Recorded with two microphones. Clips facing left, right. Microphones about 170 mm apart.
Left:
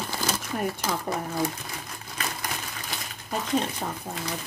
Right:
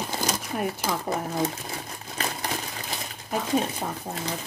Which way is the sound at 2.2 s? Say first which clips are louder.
Right 3 dB; 35° right (ahead or behind).